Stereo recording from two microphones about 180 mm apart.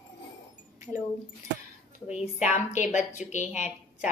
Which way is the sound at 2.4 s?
40° left (ahead or behind).